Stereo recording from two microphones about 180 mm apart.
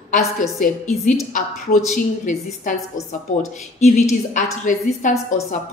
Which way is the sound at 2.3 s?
45° left (ahead or behind).